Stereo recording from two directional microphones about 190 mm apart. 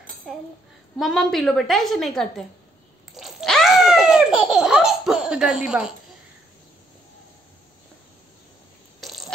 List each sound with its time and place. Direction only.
0.9 s a woman's voice: centre (ahead or behind)
3.2 s laughter: centre (ahead or behind)